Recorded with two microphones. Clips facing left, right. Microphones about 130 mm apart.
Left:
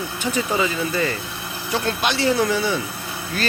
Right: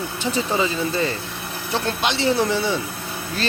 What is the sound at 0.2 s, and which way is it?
Speech, 25° right (ahead or behind).